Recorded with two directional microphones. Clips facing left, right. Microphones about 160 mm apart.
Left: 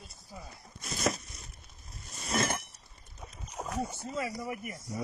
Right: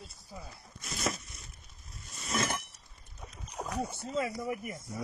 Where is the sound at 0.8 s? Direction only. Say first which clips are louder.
Left 3 dB; 35° left (ahead or behind).